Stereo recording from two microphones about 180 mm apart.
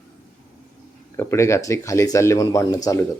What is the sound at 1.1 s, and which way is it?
Speech, 15° left (ahead or behind).